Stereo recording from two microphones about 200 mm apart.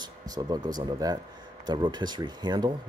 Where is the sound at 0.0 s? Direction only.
20° right (ahead or behind).